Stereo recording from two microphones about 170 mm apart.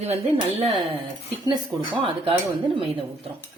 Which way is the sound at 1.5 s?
25° right (ahead or behind).